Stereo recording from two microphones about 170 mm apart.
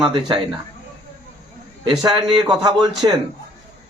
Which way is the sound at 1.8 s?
25° right (ahead or behind).